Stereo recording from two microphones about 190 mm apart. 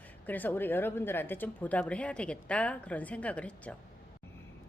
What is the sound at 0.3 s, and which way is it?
Speech, 10° left (ahead or behind).